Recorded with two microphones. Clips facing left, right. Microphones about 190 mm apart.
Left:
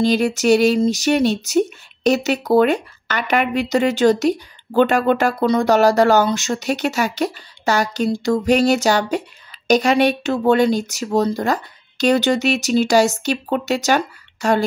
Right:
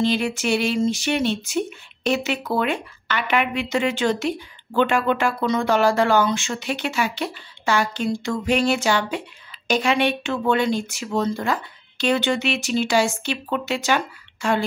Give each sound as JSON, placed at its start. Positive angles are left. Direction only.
{"t": 0.0, "sound": "speech", "side_deg": 40}